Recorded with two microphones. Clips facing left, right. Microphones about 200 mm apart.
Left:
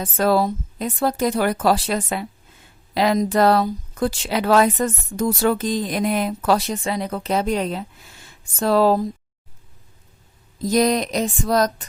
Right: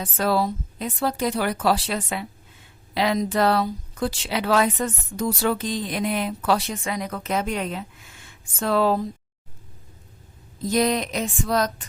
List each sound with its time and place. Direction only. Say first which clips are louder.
0.0 s speech: left 4 dB; 45° left (ahead or behind)
10.6 s speech: left 3 dB; 40° left (ahead or behind)